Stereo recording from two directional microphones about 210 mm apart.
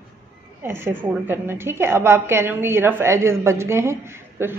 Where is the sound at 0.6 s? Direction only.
10° right (ahead or behind).